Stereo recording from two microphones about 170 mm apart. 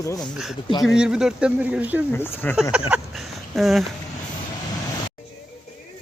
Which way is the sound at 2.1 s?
15° left (ahead or behind).